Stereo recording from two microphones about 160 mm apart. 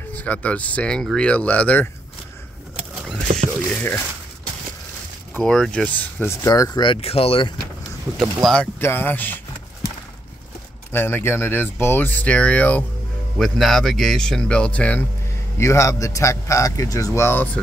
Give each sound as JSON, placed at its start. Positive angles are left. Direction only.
{"t": 0.1, "sound": "speech", "side_deg": 10}
{"t": 3.7, "sound": "speech", "side_deg": 15}
{"t": 5.3, "sound": "speech", "side_deg": 5}
{"t": 8.2, "sound": "speech", "side_deg": 0}
{"t": 8.7, "sound": "speech", "side_deg": 15}
{"t": 10.9, "sound": "speech", "side_deg": 15}